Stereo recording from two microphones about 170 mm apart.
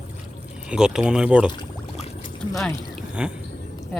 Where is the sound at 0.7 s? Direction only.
5° right (ahead or behind).